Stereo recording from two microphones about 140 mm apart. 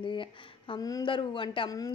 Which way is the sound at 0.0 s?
35° left (ahead or behind).